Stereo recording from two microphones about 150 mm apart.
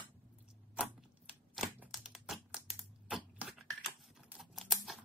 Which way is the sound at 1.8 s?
5° right (ahead or behind).